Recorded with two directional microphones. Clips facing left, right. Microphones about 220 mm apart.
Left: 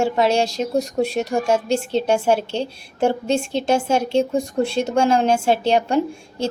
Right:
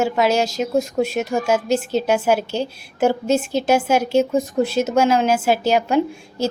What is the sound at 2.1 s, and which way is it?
Speech, 30° left (ahead or behind).